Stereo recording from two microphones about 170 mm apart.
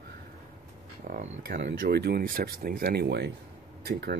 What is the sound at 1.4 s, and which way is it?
Speech, 75° right (ahead or behind).